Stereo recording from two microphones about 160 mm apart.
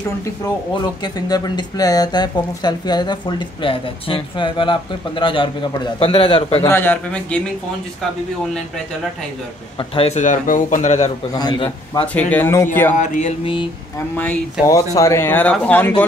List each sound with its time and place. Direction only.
1.0 s speech: 25° left (ahead or behind)
6.6 s speech: 15° left (ahead or behind)
9.8 s a man's voice: 40° left (ahead or behind)
11.3 s speech: 25° left (ahead or behind)
12.1 s speech: 10° left (ahead or behind)
12.9 s a man's voice: 50° left (ahead or behind)
13.4 s speech: 35° left (ahead or behind)
13.9 s speech: 15° left (ahead or behind)